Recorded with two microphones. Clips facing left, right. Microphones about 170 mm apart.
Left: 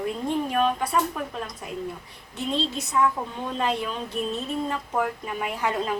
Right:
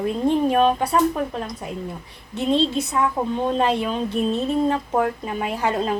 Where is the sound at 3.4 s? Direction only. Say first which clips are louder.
Right 5 dB; 30° right (ahead or behind).